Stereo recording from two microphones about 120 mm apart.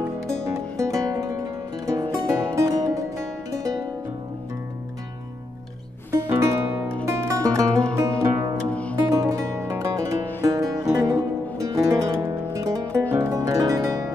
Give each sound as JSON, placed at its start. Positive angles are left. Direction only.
{"t": 0.3, "sound": "music", "side_deg": -25}
{"t": 7.1, "sound": "music", "side_deg": -25}